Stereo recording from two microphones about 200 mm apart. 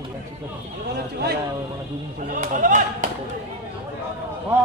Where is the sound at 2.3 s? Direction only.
40° right (ahead or behind).